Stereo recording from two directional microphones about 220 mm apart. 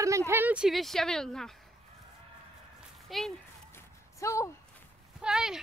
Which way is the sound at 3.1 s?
Centre (ahead or behind).